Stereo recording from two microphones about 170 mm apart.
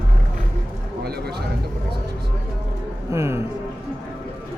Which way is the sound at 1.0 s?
70° right (ahead or behind).